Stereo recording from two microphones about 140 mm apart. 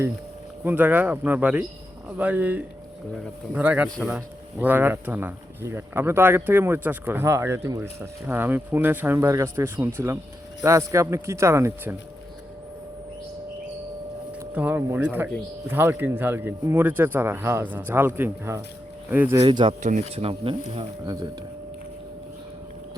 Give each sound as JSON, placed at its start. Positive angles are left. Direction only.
{"t": 0.6, "sound": "speech", "side_deg": -15}
{"t": 14.5, "sound": "speech", "side_deg": -10}
{"t": 19.4, "sound": "speech", "side_deg": -35}